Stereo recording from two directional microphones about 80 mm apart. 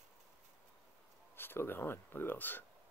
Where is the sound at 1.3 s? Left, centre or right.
Left.